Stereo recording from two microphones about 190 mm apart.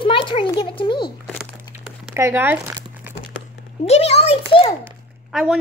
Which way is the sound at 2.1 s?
10° right (ahead or behind).